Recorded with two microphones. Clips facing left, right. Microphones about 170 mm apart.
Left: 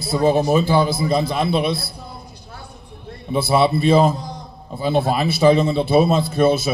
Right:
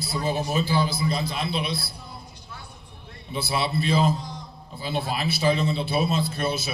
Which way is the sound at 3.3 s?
55° left (ahead or behind).